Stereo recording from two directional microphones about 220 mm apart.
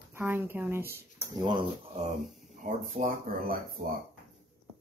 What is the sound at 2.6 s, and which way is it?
Speech, 35° right (ahead or behind).